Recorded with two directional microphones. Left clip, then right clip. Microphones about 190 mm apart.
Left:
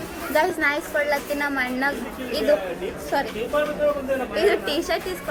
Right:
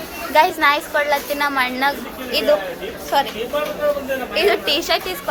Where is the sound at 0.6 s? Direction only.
15° left (ahead or behind).